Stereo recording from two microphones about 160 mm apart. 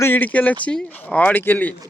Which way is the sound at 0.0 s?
10° left (ahead or behind).